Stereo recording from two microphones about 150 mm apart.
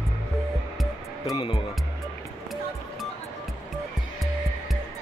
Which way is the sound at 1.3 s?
35° left (ahead or behind).